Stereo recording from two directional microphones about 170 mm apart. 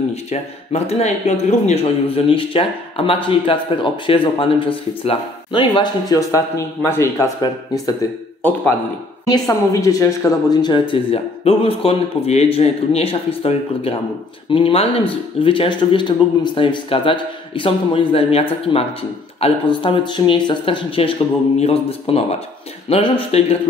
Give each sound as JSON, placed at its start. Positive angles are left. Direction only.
{"t": 0.1, "sound": "speech", "side_deg": 40}